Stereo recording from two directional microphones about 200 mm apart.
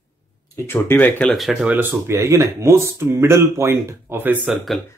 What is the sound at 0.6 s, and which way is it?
Speech, 10° left (ahead or behind).